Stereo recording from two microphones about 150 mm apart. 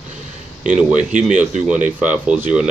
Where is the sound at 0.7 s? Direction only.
5° right (ahead or behind).